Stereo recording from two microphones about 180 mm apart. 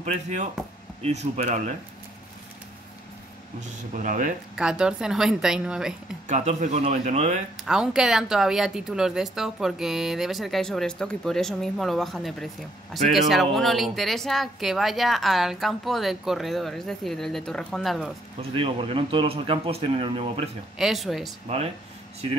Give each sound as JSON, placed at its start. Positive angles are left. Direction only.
{"t": 1.0, "sound": "speech", "side_deg": -40}
{"t": 3.9, "sound": "speech", "side_deg": -45}
{"t": 4.6, "sound": "speech", "side_deg": -5}
{"t": 6.2, "sound": "speech", "side_deg": -40}
{"t": 7.6, "sound": "speech", "side_deg": -5}
{"t": 18.4, "sound": "speech", "side_deg": -30}
{"t": 20.7, "sound": "speech", "side_deg": 0}